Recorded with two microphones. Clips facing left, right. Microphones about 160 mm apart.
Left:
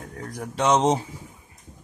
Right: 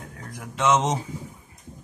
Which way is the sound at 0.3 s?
40° left (ahead or behind).